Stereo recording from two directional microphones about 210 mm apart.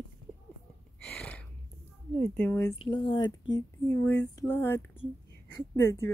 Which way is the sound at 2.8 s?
20° left (ahead or behind).